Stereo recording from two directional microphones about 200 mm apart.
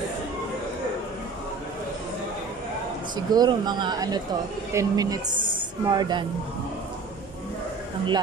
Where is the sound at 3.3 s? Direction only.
20° right (ahead or behind).